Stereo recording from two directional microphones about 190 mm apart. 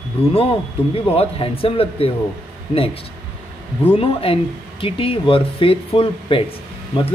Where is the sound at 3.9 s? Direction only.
30° left (ahead or behind).